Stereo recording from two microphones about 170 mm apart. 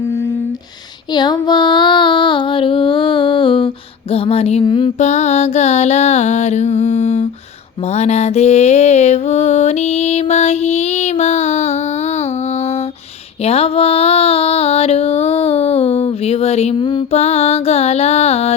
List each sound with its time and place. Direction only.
1.1 s female singing: 25° left (ahead or behind)
4.1 s mantra: 35° left (ahead or behind)
4.9 s mantra: 45° left (ahead or behind)
7.9 s music: 40° left (ahead or behind)
13.4 s a sound: 35° left (ahead or behind)